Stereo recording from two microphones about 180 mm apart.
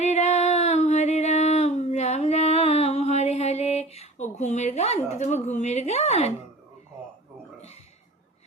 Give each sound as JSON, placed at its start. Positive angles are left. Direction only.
{"t": 0.0, "sound": "female singing", "side_deg": 40}